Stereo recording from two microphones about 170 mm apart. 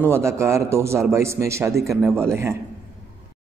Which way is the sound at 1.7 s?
Centre (ahead or behind).